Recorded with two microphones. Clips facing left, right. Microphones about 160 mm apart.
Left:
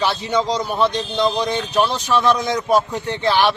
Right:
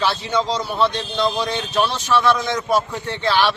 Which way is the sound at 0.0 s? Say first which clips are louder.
Left 1 dB; 15° left (ahead or behind).